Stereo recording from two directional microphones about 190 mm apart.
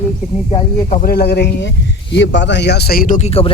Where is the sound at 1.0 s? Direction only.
55° left (ahead or behind).